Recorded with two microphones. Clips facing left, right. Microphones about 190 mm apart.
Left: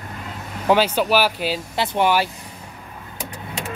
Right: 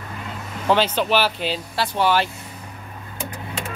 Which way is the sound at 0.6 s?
10° left (ahead or behind).